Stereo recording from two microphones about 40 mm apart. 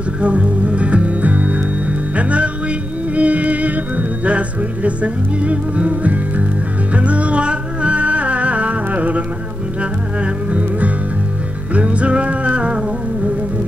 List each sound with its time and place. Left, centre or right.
0.2 s music: right